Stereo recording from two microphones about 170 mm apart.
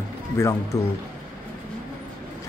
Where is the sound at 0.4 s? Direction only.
15° left (ahead or behind).